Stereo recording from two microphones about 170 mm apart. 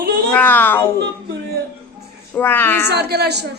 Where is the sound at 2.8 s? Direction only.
75° right (ahead or behind).